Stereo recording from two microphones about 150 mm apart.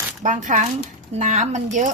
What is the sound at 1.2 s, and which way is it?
Chopping, 50° right (ahead or behind).